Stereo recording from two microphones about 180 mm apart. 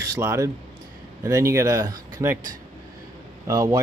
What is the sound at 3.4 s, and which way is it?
Speech, 20° right (ahead or behind).